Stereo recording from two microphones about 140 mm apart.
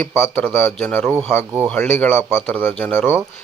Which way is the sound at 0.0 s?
10° left (ahead or behind).